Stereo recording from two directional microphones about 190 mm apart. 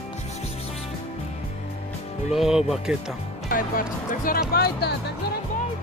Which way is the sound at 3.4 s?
45° left (ahead or behind).